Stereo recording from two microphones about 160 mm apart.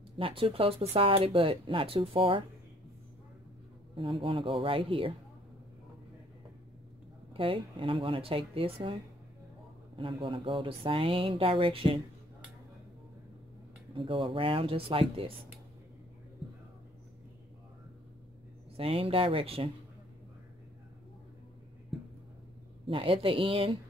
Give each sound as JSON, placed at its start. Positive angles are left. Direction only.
{"t": 0.2, "sound": "speech", "side_deg": -35}
{"t": 3.9, "sound": "speech", "side_deg": -35}
{"t": 7.3, "sound": "speech", "side_deg": -35}
{"t": 13.9, "sound": "speech", "side_deg": -35}
{"t": 18.8, "sound": "speech", "side_deg": -35}
{"t": 22.8, "sound": "speech", "side_deg": -35}